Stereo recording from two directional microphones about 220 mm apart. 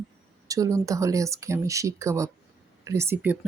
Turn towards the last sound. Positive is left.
turn(degrees=-10)  # may be behind; listen again after turning